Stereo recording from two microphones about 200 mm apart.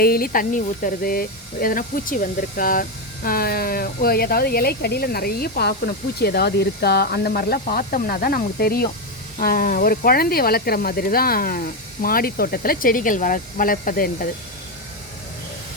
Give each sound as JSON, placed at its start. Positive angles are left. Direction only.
{"t": 0.0, "sound": "speech", "side_deg": 50}